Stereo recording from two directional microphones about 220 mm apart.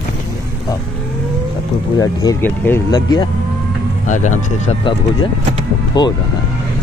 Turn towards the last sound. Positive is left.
turn(degrees=20)  # may be behind; listen again after turning